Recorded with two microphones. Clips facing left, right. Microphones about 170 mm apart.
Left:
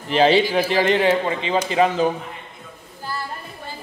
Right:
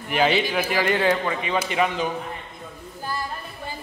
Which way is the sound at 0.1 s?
30° left (ahead or behind).